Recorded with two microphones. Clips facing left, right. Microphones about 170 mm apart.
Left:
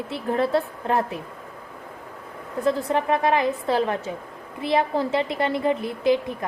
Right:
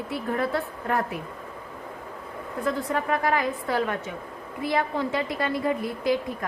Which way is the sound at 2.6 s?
25° left (ahead or behind).